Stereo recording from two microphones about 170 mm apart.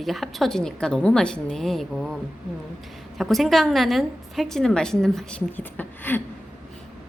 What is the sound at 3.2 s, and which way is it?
A woman's voice, centre (ahead or behind).